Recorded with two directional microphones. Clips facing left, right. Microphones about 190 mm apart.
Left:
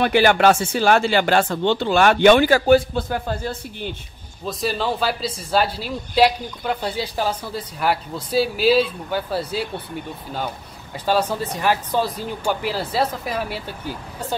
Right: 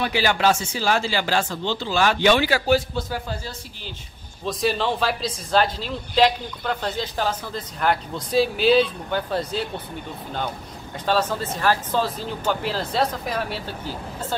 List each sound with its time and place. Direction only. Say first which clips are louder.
0.0 s speech: left 6 dB; 55° left (ahead or behind)
4.5 s a man's voice: right 1 dB; centre (ahead or behind)
11.1 s a man's voice: left 2 dB; 10° left (ahead or behind)